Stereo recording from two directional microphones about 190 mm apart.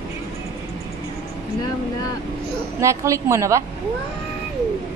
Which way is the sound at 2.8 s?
15° right (ahead or behind).